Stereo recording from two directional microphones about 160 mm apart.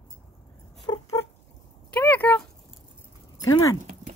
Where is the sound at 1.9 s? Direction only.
10° left (ahead or behind).